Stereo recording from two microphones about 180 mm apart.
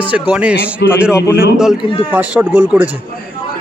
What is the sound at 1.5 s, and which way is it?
A man's voice, 5° right (ahead or behind).